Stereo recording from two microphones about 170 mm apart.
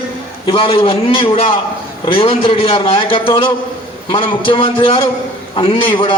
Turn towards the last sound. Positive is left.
turn(degrees=30)  # may be behind; listen again after turning